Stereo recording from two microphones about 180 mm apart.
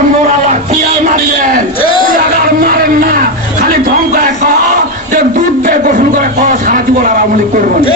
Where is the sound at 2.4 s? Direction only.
55° right (ahead or behind).